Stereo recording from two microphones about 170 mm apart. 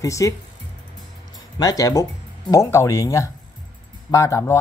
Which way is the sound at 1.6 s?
20° left (ahead or behind).